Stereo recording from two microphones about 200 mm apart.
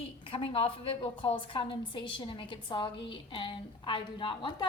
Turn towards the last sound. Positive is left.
turn(degrees=25)  # may be behind; listen again after turning